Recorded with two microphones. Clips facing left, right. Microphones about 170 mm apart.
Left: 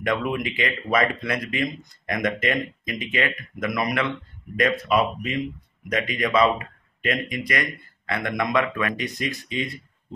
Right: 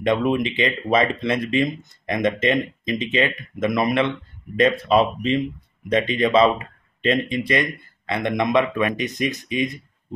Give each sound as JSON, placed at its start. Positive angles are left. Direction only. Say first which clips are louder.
{"t": 0.0, "sound": "speech", "louder": "right 5 dB", "side_deg": -25}